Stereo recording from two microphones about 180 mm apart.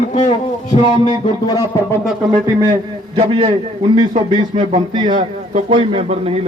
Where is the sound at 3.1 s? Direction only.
30° right (ahead or behind).